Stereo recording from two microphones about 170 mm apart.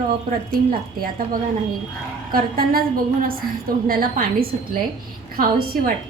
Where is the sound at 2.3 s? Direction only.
60° right (ahead or behind).